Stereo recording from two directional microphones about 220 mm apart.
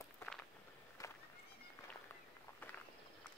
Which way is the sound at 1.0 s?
15° left (ahead or behind).